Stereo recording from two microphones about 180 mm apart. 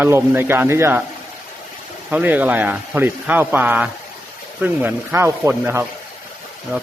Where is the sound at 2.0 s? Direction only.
10° right (ahead or behind).